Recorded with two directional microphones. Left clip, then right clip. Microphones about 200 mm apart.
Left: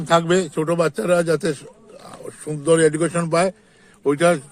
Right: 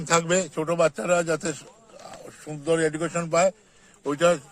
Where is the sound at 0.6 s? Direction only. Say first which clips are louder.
Left 3 dB; 35° left (ahead or behind).